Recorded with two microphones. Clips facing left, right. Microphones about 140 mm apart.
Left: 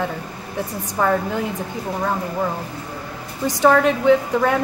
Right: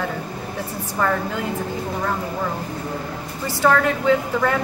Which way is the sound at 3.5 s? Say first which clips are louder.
Left 3 dB; 15° left (ahead or behind).